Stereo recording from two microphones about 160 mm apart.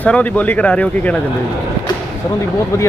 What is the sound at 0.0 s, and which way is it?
Speech, 10° left (ahead or behind).